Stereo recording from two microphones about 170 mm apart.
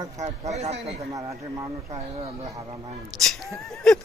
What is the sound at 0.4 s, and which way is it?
Speech, 40° right (ahead or behind).